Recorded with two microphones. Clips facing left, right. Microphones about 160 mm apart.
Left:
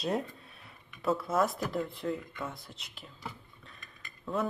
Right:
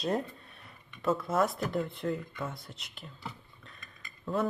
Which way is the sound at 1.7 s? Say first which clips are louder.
Right 1 dB; centre (ahead or behind).